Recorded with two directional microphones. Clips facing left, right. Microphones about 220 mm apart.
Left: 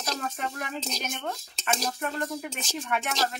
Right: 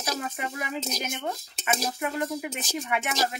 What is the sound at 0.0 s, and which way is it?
Speech, 5° right (ahead or behind).